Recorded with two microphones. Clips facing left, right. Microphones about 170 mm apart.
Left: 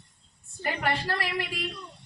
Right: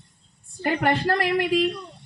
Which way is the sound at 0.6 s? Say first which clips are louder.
Right 7 dB; 50° right (ahead or behind).